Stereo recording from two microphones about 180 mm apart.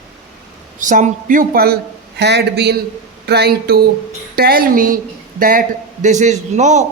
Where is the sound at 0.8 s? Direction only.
45° right (ahead or behind).